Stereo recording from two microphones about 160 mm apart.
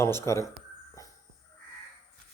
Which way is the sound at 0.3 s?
20° left (ahead or behind).